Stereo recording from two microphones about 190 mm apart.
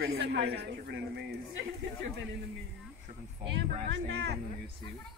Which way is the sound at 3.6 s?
65° right (ahead or behind).